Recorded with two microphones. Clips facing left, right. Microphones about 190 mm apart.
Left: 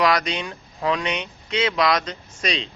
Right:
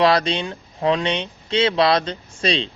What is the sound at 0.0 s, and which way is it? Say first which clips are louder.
A woman's voice: right 4 dB; 30° right (ahead or behind).